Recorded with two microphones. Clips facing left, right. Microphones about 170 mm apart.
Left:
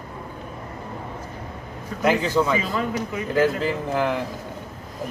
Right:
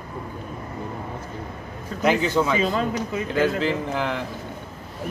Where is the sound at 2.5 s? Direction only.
25° right (ahead or behind).